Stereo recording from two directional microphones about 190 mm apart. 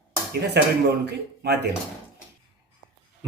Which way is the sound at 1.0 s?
60° right (ahead or behind).